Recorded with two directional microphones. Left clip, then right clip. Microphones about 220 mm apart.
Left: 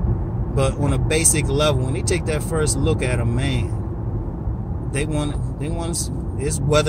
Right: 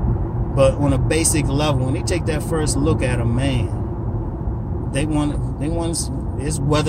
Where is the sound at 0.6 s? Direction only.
15° left (ahead or behind).